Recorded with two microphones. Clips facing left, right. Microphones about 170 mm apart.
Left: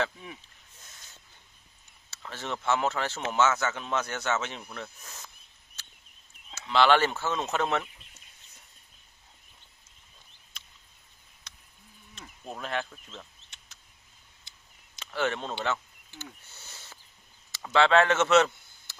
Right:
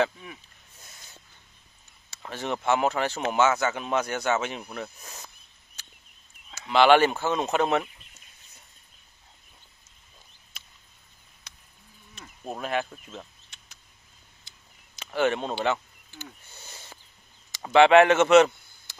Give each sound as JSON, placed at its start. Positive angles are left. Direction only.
{"t": 2.0, "sound": "speech", "side_deg": -15}
{"t": 5.8, "sound": "a sound", "side_deg": -15}
{"t": 6.5, "sound": "speech", "side_deg": -15}
{"t": 10.6, "sound": "a sound", "side_deg": -5}
{"t": 12.4, "sound": "speech", "side_deg": -15}
{"t": 15.1, "sound": "a man's voice", "side_deg": -15}